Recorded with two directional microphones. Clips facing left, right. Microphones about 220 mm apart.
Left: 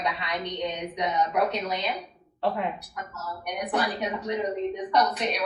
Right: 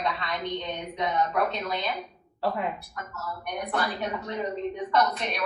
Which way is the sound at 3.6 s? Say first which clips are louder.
Left 2 dB; 15° left (ahead or behind).